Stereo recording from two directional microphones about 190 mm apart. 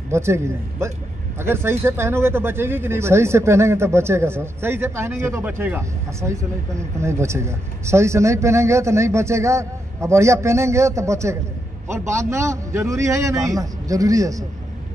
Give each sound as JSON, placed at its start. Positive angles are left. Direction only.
{"t": 0.1, "sound": "speech", "side_deg": -15}